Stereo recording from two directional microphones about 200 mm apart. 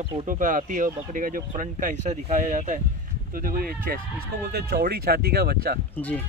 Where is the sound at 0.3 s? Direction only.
40° right (ahead or behind).